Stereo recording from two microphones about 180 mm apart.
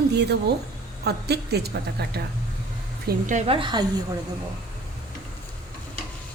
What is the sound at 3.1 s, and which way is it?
Speech, 45° right (ahead or behind).